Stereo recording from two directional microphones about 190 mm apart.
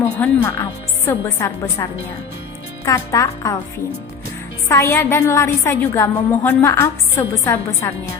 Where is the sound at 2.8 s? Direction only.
15° left (ahead or behind).